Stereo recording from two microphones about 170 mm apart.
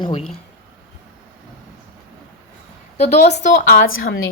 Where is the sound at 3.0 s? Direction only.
40° left (ahead or behind).